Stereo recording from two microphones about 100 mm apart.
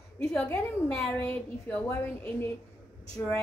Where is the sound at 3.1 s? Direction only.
5° left (ahead or behind).